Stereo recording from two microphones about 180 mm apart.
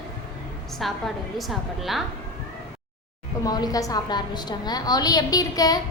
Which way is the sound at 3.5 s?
20° left (ahead or behind).